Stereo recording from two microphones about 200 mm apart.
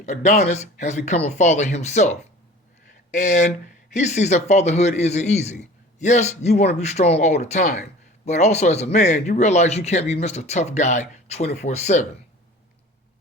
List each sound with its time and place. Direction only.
0.0 s speech: 35° left (ahead or behind)
3.2 s a man's voice: 35° left (ahead or behind)